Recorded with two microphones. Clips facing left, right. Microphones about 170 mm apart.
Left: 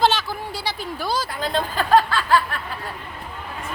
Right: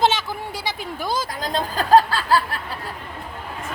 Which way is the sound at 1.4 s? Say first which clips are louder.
Left 1 dB; 35° right (ahead or behind).